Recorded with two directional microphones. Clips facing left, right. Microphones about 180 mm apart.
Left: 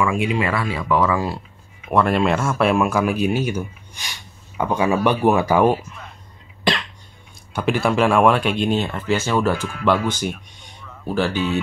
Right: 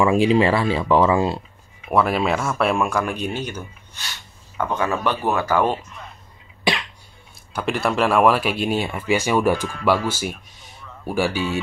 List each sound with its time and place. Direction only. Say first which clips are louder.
0.0 s speech: right 5 dB; 30° right (ahead or behind)
1.9 s speech: left 2 dB; 5° right (ahead or behind)
7.5 s speech: left 3 dB; centre (ahead or behind)